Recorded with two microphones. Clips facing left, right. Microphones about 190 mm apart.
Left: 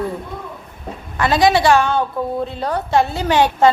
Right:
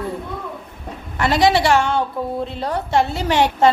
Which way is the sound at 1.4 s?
25° right (ahead or behind).